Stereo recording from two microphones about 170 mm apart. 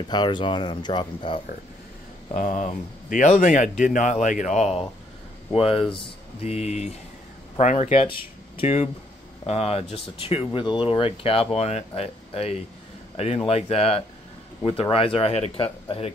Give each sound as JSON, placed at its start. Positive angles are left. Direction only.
{"t": 0.1, "sound": "speech", "side_deg": 25}
{"t": 2.3, "sound": "speech", "side_deg": 45}
{"t": 8.1, "sound": "a man's voice", "side_deg": 30}